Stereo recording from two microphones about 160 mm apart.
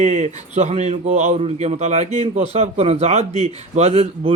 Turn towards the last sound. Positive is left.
turn(degrees=-40)  # may be behind; listen again after turning